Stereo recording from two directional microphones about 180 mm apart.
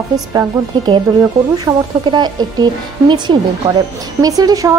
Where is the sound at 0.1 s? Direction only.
20° right (ahead or behind).